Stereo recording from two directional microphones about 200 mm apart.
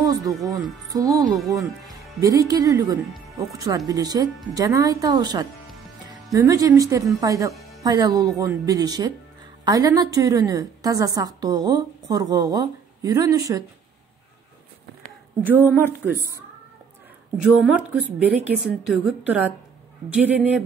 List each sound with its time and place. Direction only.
0.0 s music: 15° right (ahead or behind)
0.3 s a woman's voice: centre (ahead or behind)
0.9 s a woman's voice: 15° right (ahead or behind)
15.4 s a woman's voice: 10° right (ahead or behind)
17.4 s a woman's voice: 5° right (ahead or behind)